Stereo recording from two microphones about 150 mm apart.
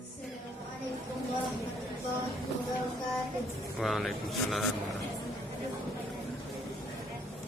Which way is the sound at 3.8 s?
Centre (ahead or behind).